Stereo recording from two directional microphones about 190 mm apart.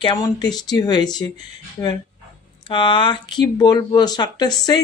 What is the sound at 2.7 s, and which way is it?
Speech, 25° left (ahead or behind).